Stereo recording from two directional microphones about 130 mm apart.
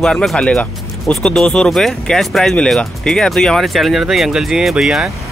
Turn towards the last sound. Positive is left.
turn(degrees=-5)  # may be behind; listen again after turning